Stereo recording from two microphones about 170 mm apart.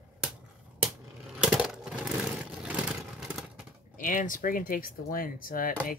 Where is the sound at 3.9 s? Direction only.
50° left (ahead or behind).